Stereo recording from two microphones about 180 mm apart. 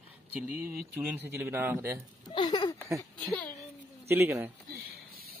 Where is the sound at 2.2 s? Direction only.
25° left (ahead or behind).